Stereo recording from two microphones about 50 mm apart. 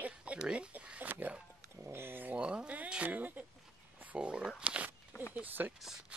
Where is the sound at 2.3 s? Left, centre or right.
Right.